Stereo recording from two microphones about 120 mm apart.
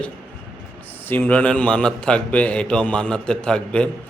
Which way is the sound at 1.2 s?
10° left (ahead or behind).